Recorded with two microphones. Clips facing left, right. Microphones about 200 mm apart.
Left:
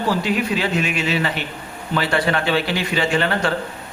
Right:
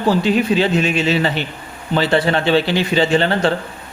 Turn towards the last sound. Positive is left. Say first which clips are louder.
# right 5 dB
turn(degrees=-25)  # may be behind; listen again after turning